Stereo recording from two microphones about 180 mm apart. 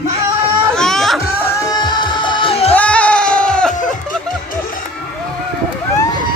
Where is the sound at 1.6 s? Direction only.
20° left (ahead or behind).